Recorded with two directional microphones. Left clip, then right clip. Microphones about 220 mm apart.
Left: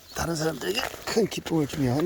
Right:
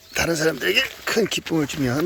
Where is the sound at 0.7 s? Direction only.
45° right (ahead or behind).